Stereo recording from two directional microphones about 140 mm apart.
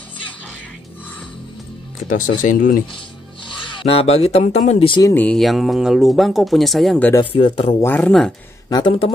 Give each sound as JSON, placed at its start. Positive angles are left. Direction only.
{"t": 2.0, "sound": "speech", "side_deg": 70}
{"t": 3.5, "sound": "speech", "side_deg": 40}
{"t": 5.1, "sound": "speech", "side_deg": 10}
{"t": 5.4, "sound": "speech", "side_deg": 0}
{"t": 7.2, "sound": "speech", "side_deg": 35}
{"t": 7.8, "sound": "speech", "side_deg": 15}
{"t": 8.6, "sound": "speech", "side_deg": 30}